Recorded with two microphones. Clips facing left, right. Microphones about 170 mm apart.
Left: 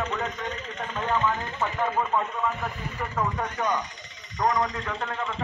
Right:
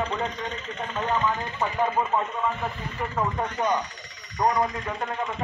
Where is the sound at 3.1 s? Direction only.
20° right (ahead or behind).